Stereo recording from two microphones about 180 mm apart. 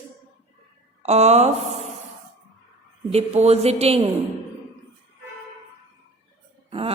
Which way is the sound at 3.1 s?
35° right (ahead or behind).